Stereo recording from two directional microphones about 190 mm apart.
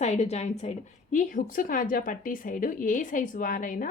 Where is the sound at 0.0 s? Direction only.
35° left (ahead or behind).